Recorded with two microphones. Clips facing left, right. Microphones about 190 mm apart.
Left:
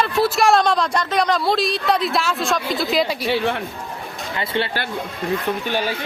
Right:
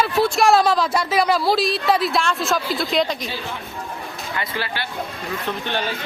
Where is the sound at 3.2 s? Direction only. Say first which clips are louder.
Left 9 dB; 65° left (ahead or behind).